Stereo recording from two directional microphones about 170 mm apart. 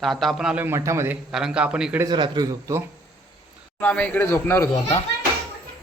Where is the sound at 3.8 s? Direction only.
5° left (ahead or behind).